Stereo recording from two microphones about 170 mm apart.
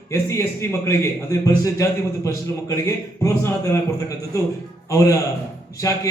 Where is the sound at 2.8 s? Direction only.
15° left (ahead or behind).